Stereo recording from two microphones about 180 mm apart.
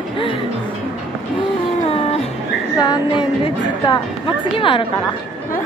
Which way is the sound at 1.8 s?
35° left (ahead or behind).